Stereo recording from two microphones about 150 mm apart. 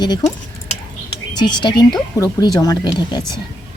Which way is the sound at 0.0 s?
30° left (ahead or behind).